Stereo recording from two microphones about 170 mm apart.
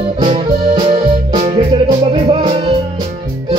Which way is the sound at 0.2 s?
35° right (ahead or behind).